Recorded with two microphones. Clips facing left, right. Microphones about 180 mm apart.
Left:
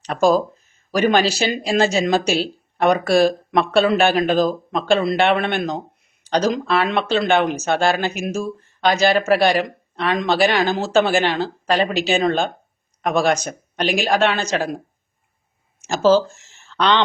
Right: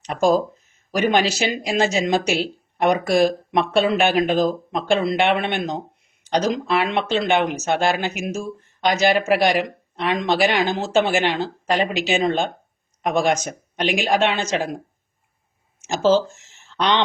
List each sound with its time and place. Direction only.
0.1 s speech: 20° right (ahead or behind)
15.8 s speech: 20° right (ahead or behind)